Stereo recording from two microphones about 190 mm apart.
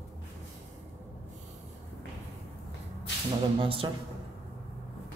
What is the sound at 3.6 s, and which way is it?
Speech, 30° right (ahead or behind).